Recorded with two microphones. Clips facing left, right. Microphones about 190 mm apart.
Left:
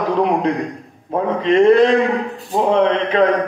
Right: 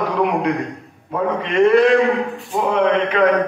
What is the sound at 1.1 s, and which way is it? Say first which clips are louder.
A man's voice: left 4 dB; 35° left (ahead or behind).